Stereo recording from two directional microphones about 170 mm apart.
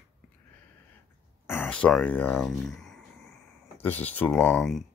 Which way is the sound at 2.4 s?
Centre (ahead or behind).